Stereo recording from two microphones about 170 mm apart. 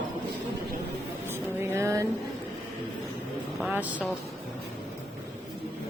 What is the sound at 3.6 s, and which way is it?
Speech, 10° right (ahead or behind).